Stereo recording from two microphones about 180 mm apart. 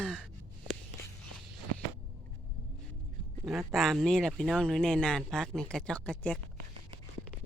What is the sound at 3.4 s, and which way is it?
Speech, centre (ahead or behind).